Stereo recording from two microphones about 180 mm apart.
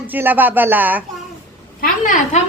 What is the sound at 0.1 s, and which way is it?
Speech, 10° right (ahead or behind).